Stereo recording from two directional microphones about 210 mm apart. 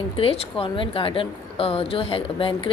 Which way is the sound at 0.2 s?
25° left (ahead or behind).